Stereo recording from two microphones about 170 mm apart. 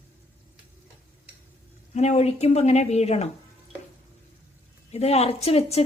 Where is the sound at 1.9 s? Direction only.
40° left (ahead or behind).